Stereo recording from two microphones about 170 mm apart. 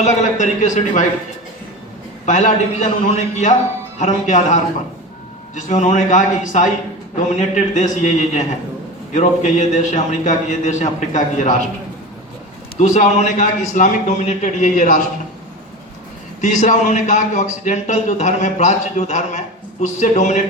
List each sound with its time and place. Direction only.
0.0 s a man's voice: 45° left (ahead or behind)
2.2 s a man's voice: 45° left (ahead or behind)
3.9 s a man's voice: 45° left (ahead or behind)
12.7 s a man's voice: 45° left (ahead or behind)
16.4 s a man's voice: 45° left (ahead or behind)